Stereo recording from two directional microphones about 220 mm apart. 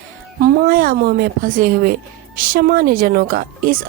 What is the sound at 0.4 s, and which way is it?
A woman's voice, 40° right (ahead or behind).